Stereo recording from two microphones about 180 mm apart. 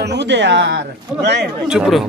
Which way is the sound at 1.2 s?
70° right (ahead or behind).